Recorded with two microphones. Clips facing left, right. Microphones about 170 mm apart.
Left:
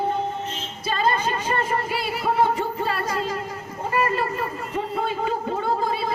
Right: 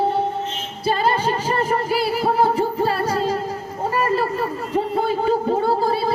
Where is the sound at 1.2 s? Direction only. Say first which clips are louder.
Right 4 dB; 35° right (ahead or behind).